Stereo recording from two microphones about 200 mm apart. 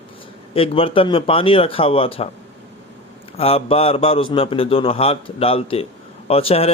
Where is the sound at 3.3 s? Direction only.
30° left (ahead or behind).